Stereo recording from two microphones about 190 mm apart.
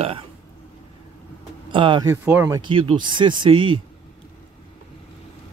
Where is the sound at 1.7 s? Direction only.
25° right (ahead or behind).